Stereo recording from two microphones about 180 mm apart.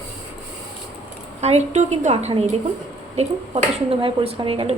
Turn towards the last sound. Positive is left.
turn(degrees=-30)  # may be behind; listen again after turning